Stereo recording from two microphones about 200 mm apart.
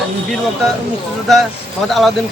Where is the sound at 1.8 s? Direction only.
Centre (ahead or behind).